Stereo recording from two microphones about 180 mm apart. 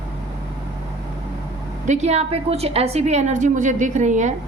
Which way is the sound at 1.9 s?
40° right (ahead or behind).